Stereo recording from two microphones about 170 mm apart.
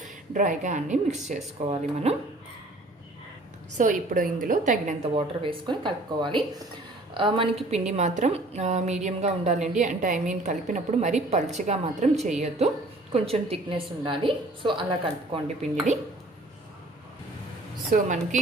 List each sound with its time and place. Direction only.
0.3 s a woman's voice: 45° right (ahead or behind)
3.8 s a woman's voice: 50° right (ahead or behind)
5.1 s a woman's voice: 30° right (ahead or behind)
17.9 s a woman's voice: 50° right (ahead or behind)